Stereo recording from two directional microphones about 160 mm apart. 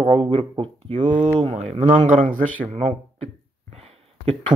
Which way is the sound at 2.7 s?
40° right (ahead or behind).